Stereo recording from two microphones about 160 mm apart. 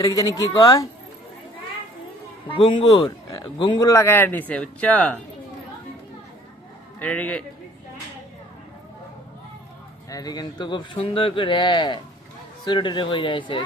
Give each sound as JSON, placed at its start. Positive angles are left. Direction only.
{"t": 0.0, "sound": "speech", "side_deg": 20}
{"t": 2.5, "sound": "speech", "side_deg": 30}
{"t": 7.0, "sound": "a man's voice", "side_deg": 10}
{"t": 10.1, "sound": "speech", "side_deg": 25}